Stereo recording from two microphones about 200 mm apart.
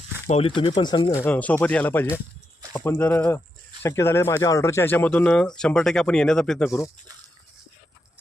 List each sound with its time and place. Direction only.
0.3 s speech: 30° left (ahead or behind)
1.2 s speech: 5° left (ahead or behind)